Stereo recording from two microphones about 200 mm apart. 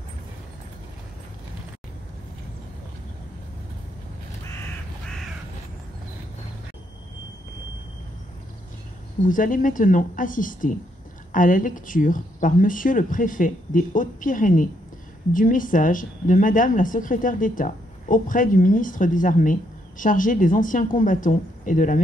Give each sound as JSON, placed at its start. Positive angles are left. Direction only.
{"t": 9.2, "sound": "a woman's voice", "side_deg": 40}